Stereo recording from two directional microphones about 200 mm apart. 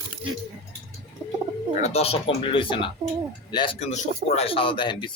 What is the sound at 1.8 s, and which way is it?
Speech, 30° left (ahead or behind).